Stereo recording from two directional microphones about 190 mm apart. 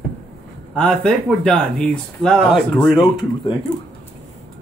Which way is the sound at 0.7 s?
5° left (ahead or behind).